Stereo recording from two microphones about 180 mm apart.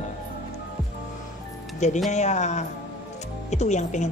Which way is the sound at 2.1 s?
40° left (ahead or behind).